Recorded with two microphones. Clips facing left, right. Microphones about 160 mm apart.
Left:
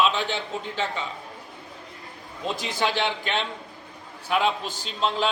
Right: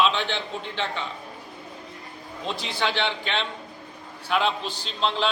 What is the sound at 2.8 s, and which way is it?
A man's voice, 10° left (ahead or behind).